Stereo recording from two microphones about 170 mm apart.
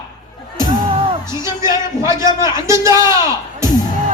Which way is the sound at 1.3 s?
20° right (ahead or behind).